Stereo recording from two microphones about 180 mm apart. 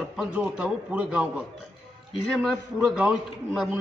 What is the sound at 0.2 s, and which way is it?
A man's voice, 5° right (ahead or behind).